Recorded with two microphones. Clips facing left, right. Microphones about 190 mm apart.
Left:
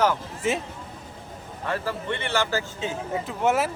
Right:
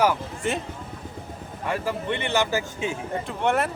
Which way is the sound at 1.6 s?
15° right (ahead or behind).